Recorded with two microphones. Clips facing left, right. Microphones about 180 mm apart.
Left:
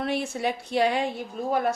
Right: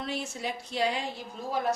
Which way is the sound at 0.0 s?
60° left (ahead or behind).